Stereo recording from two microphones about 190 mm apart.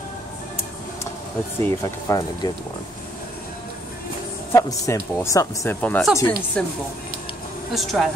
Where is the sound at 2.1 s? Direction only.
20° left (ahead or behind).